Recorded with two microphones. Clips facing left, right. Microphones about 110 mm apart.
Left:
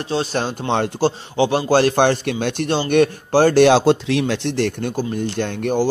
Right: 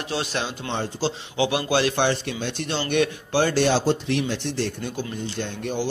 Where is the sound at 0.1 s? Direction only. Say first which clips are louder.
Left 7 dB; 35° left (ahead or behind).